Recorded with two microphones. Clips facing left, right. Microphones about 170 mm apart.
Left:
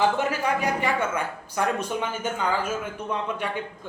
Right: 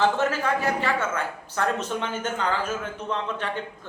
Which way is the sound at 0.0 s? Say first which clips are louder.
Even; 15° left (ahead or behind).